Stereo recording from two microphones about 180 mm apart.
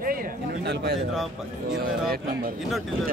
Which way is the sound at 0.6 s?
65° right (ahead or behind).